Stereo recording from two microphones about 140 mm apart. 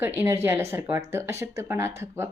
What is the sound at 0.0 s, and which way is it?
Speech, 15° right (ahead or behind).